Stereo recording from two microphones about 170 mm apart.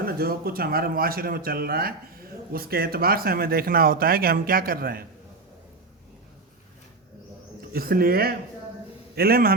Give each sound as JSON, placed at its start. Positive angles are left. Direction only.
{"t": 0.0, "sound": "speech", "side_deg": -65}
{"t": 7.7, "sound": "speech", "side_deg": -60}